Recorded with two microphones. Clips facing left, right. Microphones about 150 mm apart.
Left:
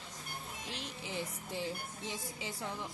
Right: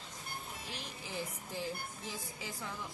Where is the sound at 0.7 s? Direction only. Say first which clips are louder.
Left 2 dB; 25° left (ahead or behind).